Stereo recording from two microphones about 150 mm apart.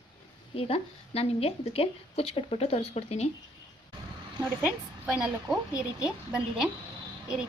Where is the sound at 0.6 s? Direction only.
40° left (ahead or behind).